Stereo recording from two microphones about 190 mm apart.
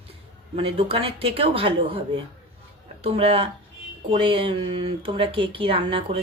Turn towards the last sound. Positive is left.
turn(degrees=-30)  # may be behind; listen again after turning